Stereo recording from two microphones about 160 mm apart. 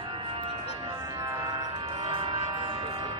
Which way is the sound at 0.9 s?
20° right (ahead or behind).